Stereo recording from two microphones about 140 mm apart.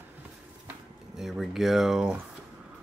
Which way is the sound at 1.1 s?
5° right (ahead or behind).